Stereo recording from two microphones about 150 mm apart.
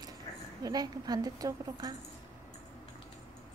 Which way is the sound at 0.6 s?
25° right (ahead or behind).